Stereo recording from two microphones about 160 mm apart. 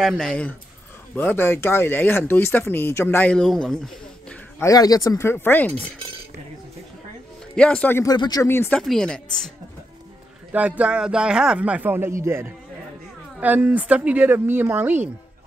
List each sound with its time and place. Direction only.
0.0 s speech: 5° left (ahead or behind)
4.6 s speech: 20° left (ahead or behind)
7.5 s speech: 5° left (ahead or behind)
8.0 s a woman's voice: 25° left (ahead or behind); by 9.5 s 5° left (ahead or behind)
10.5 s speech: 10° right (ahead or behind)